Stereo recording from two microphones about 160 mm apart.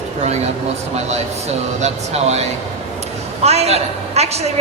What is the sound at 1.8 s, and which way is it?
A woman's voice, 45° right (ahead or behind).